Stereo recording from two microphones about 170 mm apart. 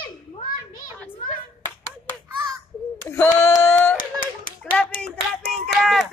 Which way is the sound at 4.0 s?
50° left (ahead or behind).